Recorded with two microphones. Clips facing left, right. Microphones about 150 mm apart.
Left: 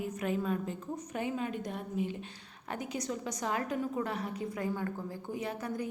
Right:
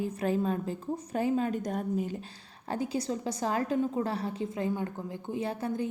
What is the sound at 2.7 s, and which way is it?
A woman's voice, 30° right (ahead or behind).